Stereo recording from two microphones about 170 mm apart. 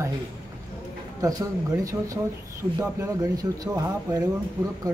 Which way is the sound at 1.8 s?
20° right (ahead or behind).